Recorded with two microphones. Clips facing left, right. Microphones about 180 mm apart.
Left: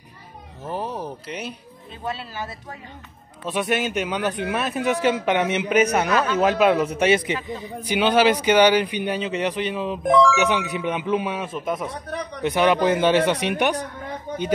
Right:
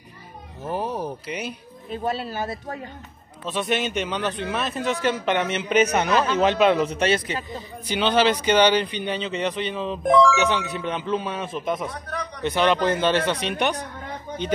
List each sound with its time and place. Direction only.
0.7 s speech: 5° right (ahead or behind)
2.0 s speech: 40° right (ahead or behind)
3.4 s speech: 10° left (ahead or behind)
6.0 s a man's voice: 30° right (ahead or behind)
6.3 s speech: 5° left (ahead or behind)
10.4 s speech: 10° left (ahead or behind)